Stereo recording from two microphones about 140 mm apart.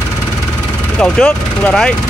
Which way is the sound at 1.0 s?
5° left (ahead or behind).